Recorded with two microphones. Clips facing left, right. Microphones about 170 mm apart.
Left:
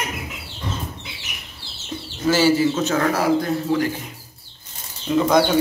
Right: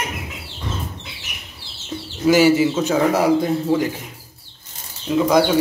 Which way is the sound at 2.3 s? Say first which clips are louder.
Right 3 dB; 15° right (ahead or behind).